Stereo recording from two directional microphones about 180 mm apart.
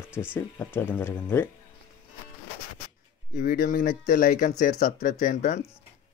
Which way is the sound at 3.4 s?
50° left (ahead or behind).